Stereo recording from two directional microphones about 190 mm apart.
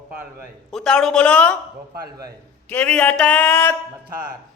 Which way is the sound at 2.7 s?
5° left (ahead or behind).